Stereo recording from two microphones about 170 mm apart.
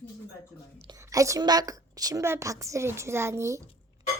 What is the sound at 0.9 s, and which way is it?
A woman's voice, 20° right (ahead or behind).